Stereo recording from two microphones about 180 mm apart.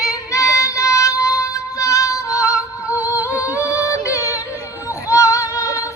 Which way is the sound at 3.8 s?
15° left (ahead or behind).